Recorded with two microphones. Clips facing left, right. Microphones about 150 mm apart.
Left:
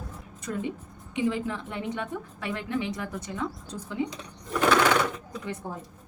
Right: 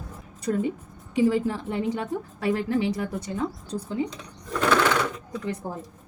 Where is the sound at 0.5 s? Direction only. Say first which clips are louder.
Right 6 dB; 35° right (ahead or behind).